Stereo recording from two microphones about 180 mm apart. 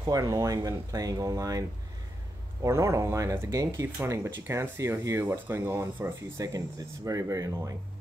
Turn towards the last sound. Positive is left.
turn(degrees=-20)  # may be behind; listen again after turning